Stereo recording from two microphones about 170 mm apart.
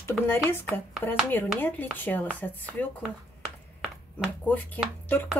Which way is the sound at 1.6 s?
10° left (ahead or behind).